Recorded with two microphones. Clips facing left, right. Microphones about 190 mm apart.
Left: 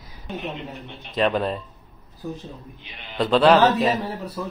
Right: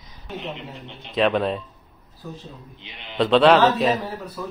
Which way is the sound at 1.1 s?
Centre (ahead or behind).